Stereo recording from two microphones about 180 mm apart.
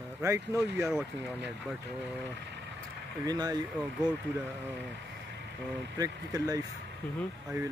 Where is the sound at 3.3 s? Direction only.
20° right (ahead or behind).